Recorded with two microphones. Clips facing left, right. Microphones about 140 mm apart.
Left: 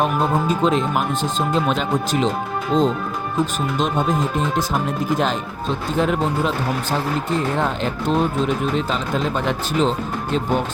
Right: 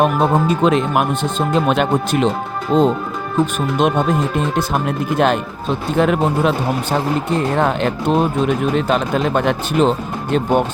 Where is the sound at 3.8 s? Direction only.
65° right (ahead or behind).